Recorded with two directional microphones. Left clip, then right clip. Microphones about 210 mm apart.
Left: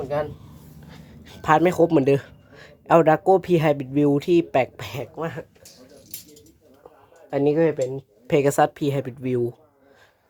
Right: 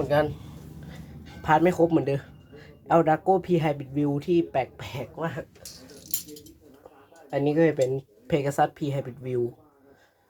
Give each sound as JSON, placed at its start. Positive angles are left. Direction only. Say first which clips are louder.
{"t": 1.2, "sound": "speech", "louder": "left 3 dB", "side_deg": 50}
{"t": 7.3, "sound": "speech", "louder": "left 4 dB", "side_deg": 40}
{"t": 7.6, "sound": "speech", "louder": "left 1 dB", "side_deg": 15}
{"t": 8.3, "sound": "speech", "louder": "left 6 dB", "side_deg": 50}